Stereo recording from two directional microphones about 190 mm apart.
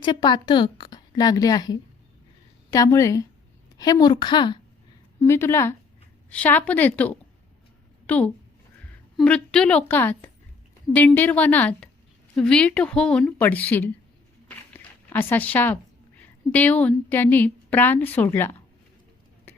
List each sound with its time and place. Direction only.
0.0 s a woman's voice: 25° left (ahead or behind)
5.2 s a woman's voice: 15° left (ahead or behind)